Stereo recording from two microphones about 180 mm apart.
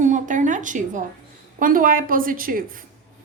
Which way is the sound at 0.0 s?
45° right (ahead or behind).